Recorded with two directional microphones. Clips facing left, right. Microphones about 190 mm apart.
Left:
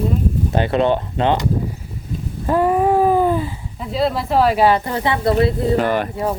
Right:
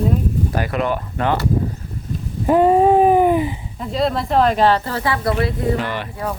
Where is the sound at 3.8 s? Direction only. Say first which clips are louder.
Even; centre (ahead or behind); by 5.5 s 25° left (ahead or behind).